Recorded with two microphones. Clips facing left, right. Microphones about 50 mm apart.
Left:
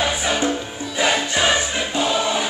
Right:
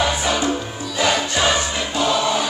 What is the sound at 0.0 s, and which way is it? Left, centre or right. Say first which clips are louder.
Music: right 1 dB; centre.